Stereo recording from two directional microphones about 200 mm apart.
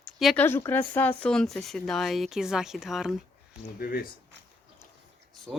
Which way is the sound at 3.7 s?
50° left (ahead or behind).